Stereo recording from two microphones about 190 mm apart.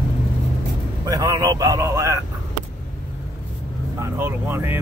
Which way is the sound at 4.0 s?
10° right (ahead or behind).